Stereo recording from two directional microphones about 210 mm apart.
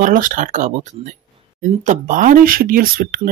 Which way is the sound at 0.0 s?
40° right (ahead or behind).